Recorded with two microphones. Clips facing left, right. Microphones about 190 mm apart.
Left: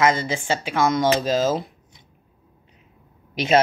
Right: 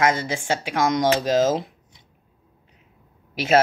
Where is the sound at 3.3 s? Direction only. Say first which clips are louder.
Even; 5° right (ahead or behind).